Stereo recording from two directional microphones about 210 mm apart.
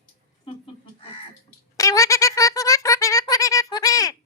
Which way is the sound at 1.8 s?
15° left (ahead or behind).